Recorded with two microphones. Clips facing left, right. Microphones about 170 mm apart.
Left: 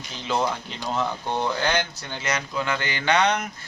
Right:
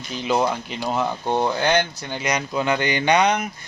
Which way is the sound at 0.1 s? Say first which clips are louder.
Right 4 dB; 15° right (ahead or behind).